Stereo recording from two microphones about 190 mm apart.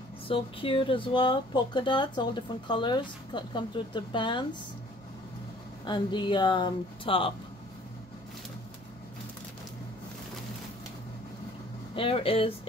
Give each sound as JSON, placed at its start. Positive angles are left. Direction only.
{"t": 0.3, "sound": "speech", "side_deg": 30}
{"t": 5.9, "sound": "speech", "side_deg": 25}
{"t": 11.9, "sound": "speech", "side_deg": 30}